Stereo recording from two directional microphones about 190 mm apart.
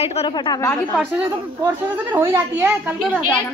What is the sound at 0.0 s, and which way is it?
Speech, 30° left (ahead or behind).